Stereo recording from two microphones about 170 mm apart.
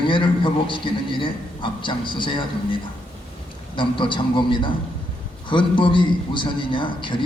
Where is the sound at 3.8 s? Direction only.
30° left (ahead or behind).